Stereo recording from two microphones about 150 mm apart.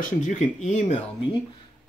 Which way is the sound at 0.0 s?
55° left (ahead or behind).